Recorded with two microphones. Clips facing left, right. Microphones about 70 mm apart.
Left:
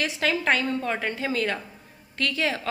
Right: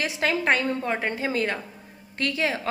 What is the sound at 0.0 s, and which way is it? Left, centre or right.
A woman's voice, right.